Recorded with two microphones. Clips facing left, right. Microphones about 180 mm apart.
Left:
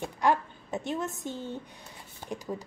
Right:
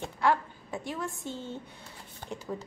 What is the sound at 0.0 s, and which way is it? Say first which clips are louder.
A woman's voice: left 1 dB; 20° left (ahead or behind).